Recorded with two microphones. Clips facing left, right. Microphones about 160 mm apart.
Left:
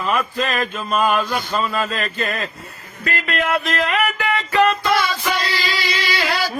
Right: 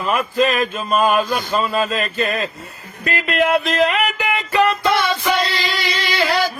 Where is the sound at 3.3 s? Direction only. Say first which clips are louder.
Right 5 dB; centre (ahead or behind).